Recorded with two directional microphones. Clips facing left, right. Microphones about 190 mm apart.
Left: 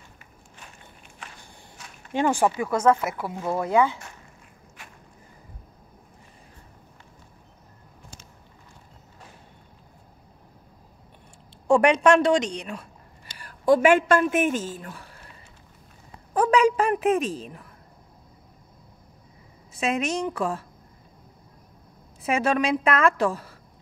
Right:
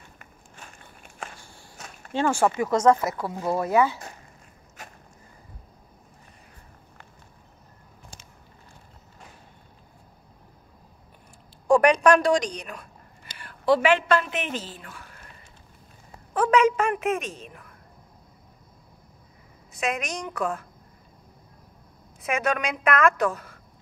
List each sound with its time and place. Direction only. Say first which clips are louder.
2.1 s speech: left 1 dB; 15° left (ahead or behind)
2.7 s speech: right 2 dB; 25° right (ahead or behind)
3.0 s speech: right 1 dB; 10° left (ahead or behind)
4.8 s a sound: right 4 dB; 40° right (ahead or behind)
11.6 s a woman's voice: even; 25° left (ahead or behind)
13.4 s a woman's voice: left 3 dB; 40° left (ahead or behind)
16.3 s a woman's voice: left 1 dB; 35° left (ahead or behind)
19.7 s a woman's voice: left 4 dB; 30° left (ahead or behind)
22.2 s a woman's voice: left 3 dB; 30° left (ahead or behind)